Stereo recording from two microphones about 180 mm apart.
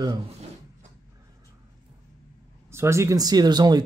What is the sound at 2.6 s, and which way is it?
Speech, 15° right (ahead or behind).